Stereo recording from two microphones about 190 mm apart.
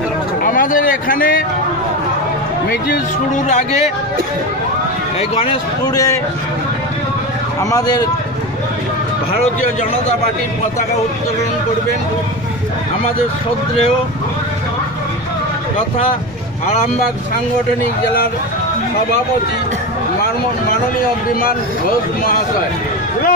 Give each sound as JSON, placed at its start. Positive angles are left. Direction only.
{"t": 0.4, "sound": "a man's voice", "side_deg": 45}
{"t": 3.4, "sound": "speech", "side_deg": 35}
{"t": 5.3, "sound": "a man's voice", "side_deg": 30}
{"t": 7.7, "sound": "a man's voice", "side_deg": 20}